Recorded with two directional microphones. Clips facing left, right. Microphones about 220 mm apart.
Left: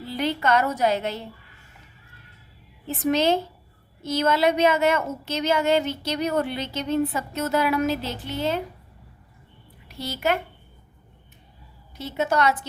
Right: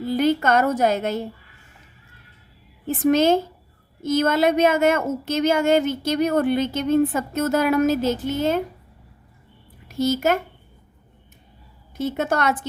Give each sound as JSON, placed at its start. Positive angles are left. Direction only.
{"t": 0.0, "sound": "a woman's voice", "side_deg": -45}
{"t": 2.8, "sound": "speech", "side_deg": -50}
{"t": 9.9, "sound": "speech", "side_deg": -45}
{"t": 11.9, "sound": "speech", "side_deg": -50}